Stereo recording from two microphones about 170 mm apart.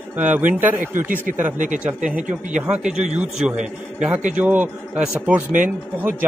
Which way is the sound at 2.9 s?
40° right (ahead or behind).